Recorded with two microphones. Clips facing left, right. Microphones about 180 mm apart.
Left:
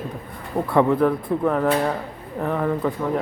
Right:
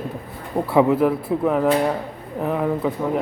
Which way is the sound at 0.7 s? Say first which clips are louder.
Right 1 dB; 5° right (ahead or behind).